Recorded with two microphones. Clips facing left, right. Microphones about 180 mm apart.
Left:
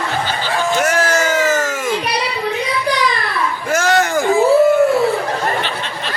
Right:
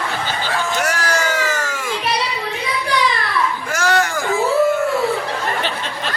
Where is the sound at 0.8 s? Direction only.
20° left (ahead or behind).